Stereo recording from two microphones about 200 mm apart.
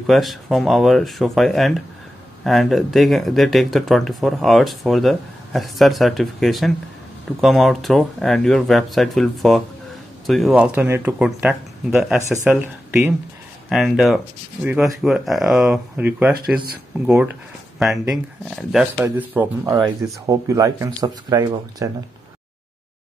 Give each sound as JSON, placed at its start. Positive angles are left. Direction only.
{"t": 0.0, "sound": "speech", "side_deg": 0}
{"t": 19.0, "sound": "speech", "side_deg": -10}